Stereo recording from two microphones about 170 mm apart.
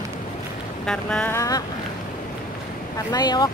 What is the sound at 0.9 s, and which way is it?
Speech, 5° left (ahead or behind).